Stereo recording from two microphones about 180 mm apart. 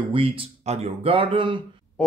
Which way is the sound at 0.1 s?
30° right (ahead or behind).